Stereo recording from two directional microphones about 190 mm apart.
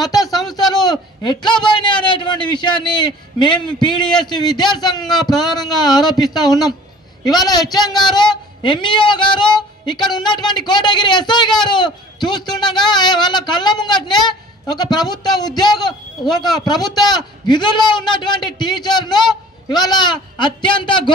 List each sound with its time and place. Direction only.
0.0 s a woman's voice: 20° left (ahead or behind)
4.0 s a man's voice: 5° left (ahead or behind)
4.3 s a woman's voice: 20° left (ahead or behind)